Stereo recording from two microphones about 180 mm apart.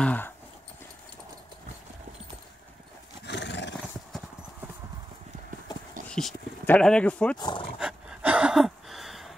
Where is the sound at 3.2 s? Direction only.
75° left (ahead or behind).